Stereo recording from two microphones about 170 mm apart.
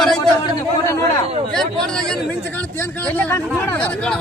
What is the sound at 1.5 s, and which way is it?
A man's voice, 5° left (ahead or behind).